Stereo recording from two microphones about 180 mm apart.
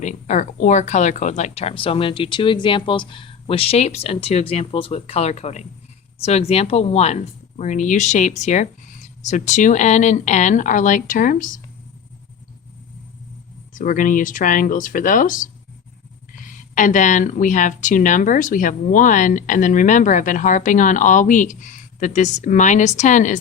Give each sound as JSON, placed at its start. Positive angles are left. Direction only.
{"t": 0.0, "sound": "speech", "side_deg": 40}
{"t": 13.7, "sound": "speech", "side_deg": 45}
{"t": 16.7, "sound": "speech", "side_deg": 45}